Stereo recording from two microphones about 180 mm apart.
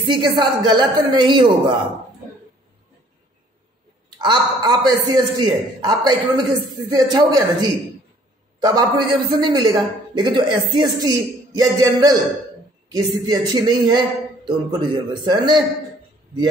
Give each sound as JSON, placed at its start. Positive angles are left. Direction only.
{"t": 0.0, "sound": "a man's voice", "side_deg": -25}
{"t": 4.2, "sound": "a man's voice", "side_deg": -25}